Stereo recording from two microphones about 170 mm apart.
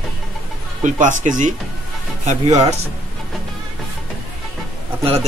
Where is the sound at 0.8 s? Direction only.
50° right (ahead or behind).